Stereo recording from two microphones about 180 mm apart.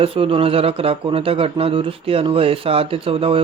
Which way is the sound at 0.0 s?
30° right (ahead or behind).